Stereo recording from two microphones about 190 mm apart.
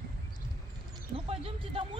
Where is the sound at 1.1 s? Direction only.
30° right (ahead or behind).